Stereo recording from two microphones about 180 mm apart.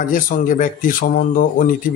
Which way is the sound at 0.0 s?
50° left (ahead or behind).